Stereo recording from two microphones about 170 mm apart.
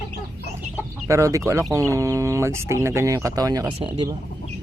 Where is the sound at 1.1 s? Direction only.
20° right (ahead or behind).